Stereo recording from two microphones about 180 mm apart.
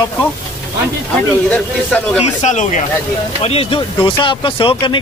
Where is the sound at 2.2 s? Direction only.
40° left (ahead or behind).